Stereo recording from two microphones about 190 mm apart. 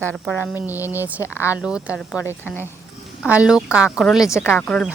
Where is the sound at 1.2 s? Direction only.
15° left (ahead or behind).